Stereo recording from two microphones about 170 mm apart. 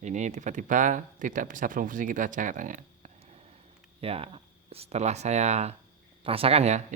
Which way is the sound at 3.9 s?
35° right (ahead or behind).